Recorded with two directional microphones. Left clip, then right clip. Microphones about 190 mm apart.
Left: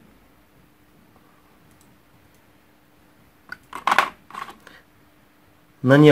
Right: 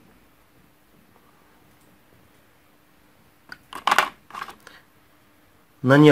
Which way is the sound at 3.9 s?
15° right (ahead or behind).